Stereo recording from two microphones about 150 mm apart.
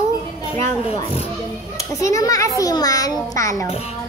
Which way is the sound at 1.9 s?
20° left (ahead or behind).